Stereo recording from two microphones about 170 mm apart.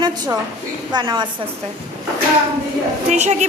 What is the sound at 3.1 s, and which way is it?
Speech, 40° right (ahead or behind).